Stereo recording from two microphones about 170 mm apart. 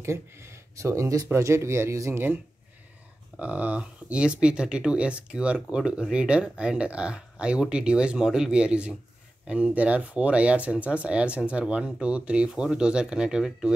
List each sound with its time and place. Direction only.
0.0 s speech: 15° right (ahead or behind)
3.3 s speech: 10° right (ahead or behind)